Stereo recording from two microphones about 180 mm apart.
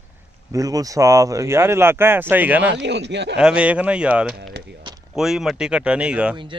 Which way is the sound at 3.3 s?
5° right (ahead or behind).